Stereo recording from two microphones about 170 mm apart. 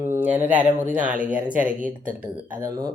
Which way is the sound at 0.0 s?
10° right (ahead or behind).